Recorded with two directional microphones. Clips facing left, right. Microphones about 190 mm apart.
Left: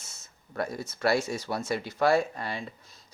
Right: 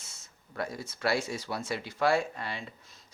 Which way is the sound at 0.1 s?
45° left (ahead or behind).